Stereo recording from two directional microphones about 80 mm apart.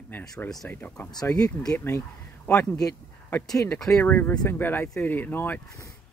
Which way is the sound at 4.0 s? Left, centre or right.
Left.